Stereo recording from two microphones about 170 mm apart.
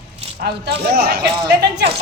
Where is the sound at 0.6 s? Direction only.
70° right (ahead or behind).